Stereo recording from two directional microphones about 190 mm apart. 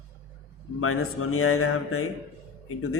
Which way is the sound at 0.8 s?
90° left.